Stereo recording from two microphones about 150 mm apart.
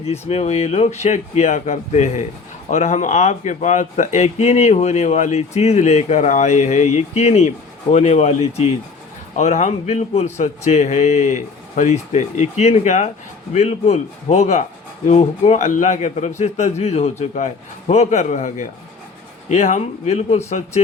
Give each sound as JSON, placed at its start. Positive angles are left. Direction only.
{"t": 0.0, "sound": "speech", "side_deg": 45}